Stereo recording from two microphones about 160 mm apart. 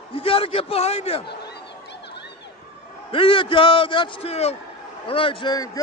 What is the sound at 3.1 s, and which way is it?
A man's voice, 35° left (ahead or behind).